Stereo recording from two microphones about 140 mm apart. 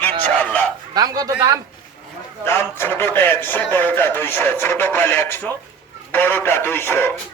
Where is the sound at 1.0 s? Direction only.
25° right (ahead or behind).